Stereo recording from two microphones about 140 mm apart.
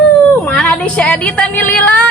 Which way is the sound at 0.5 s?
5° left (ahead or behind).